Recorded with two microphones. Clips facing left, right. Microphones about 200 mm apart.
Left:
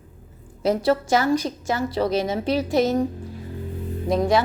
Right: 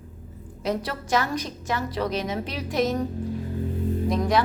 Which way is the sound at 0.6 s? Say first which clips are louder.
Left 8 dB; 30° left (ahead or behind).